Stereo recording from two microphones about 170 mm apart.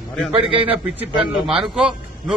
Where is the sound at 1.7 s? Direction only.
5° right (ahead or behind).